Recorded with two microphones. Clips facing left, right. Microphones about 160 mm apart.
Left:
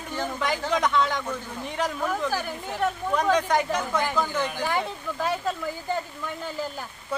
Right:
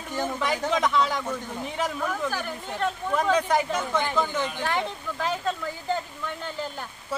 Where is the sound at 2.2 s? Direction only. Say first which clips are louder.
Left 2 dB; 10° left (ahead or behind).